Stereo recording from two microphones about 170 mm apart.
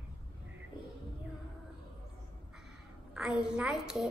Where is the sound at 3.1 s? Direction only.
5° right (ahead or behind).